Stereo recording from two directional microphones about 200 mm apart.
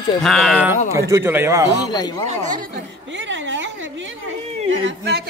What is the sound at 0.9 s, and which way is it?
Speech, 15° right (ahead or behind).